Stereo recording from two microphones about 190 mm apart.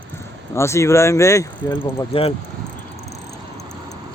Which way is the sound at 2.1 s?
30° left (ahead or behind).